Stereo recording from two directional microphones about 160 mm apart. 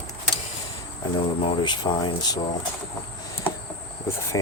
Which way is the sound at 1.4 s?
35° left (ahead or behind).